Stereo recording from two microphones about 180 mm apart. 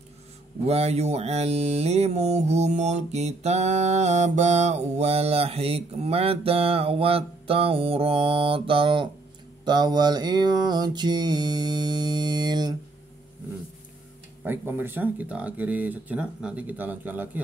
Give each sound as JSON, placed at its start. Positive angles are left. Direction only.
{"t": 0.7, "sound": "mantra", "side_deg": -35}
{"t": 14.4, "sound": "speech", "side_deg": -10}